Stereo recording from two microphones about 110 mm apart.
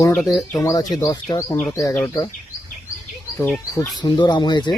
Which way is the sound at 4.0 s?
40° left (ahead or behind).